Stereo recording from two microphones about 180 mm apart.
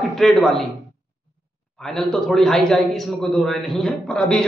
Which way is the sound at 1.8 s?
Centre (ahead or behind).